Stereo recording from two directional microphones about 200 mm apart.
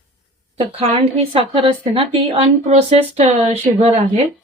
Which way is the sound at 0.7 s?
30° right (ahead or behind).